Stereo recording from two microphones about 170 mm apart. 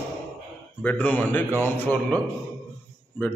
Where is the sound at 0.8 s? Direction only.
10° left (ahead or behind).